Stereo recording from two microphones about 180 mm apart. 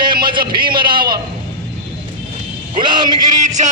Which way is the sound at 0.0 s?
25° right (ahead or behind).